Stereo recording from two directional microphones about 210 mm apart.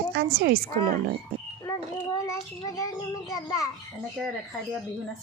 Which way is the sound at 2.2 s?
15° left (ahead or behind).